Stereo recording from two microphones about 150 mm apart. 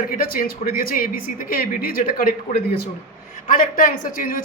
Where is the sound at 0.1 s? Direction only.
70° left (ahead or behind).